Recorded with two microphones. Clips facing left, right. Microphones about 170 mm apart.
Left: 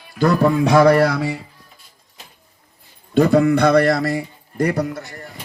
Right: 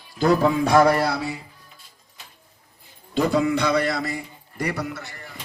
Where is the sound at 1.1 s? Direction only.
90° left.